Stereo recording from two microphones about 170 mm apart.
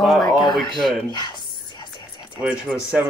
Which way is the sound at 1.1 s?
25° left (ahead or behind).